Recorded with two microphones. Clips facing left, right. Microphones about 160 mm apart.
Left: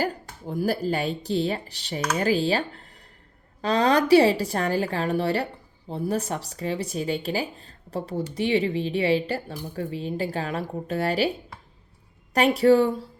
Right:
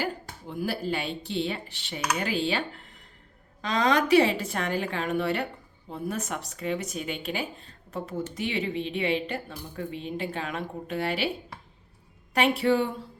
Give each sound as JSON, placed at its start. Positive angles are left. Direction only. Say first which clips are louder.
{"t": 0.0, "sound": "speech", "louder": "left 4 dB", "side_deg": 40}
{"t": 12.3, "sound": "speech", "louder": "left 5 dB", "side_deg": 40}